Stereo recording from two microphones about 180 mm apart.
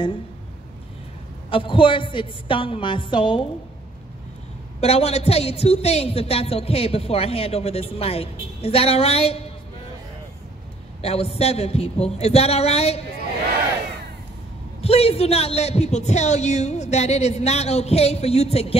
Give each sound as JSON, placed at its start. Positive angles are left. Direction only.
{"t": 1.5, "sound": "a woman's voice", "side_deg": 30}
{"t": 4.7, "sound": "a woman's voice", "side_deg": 35}
{"t": 11.0, "sound": "a woman's voice", "side_deg": 35}
{"t": 14.8, "sound": "a woman's voice", "side_deg": 35}